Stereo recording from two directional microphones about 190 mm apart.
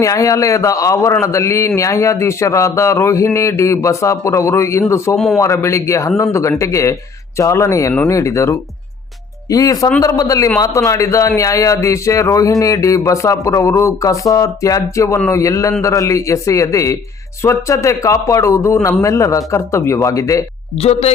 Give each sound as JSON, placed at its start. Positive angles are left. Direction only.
{"t": 0.0, "sound": "a man's voice", "side_deg": 15}
{"t": 5.1, "sound": "speech", "side_deg": 5}
{"t": 5.4, "sound": "a man's voice", "side_deg": 15}
{"t": 20.8, "sound": "a woman's voice", "side_deg": 35}